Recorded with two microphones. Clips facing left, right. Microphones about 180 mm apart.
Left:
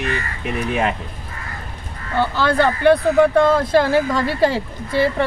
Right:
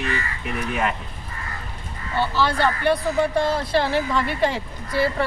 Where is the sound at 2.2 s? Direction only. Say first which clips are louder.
Left 4 dB; 55° left (ahead or behind).